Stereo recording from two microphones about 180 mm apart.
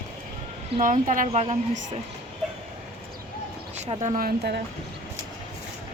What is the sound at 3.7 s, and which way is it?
Speech, 40° right (ahead or behind).